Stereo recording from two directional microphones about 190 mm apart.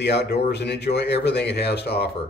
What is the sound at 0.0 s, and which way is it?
Speech, 60° left (ahead or behind).